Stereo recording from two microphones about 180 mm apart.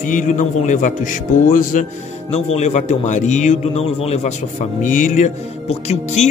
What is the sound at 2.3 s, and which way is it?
A man's voice, 35° left (ahead or behind).